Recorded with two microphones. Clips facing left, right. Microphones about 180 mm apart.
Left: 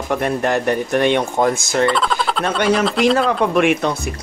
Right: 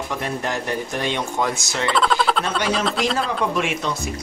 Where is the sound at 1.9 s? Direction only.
Centre (ahead or behind).